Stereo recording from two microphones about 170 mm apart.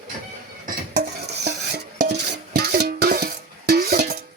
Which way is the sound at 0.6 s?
75° right (ahead or behind).